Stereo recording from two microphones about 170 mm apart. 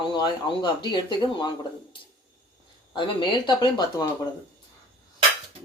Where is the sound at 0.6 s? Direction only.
25° left (ahead or behind).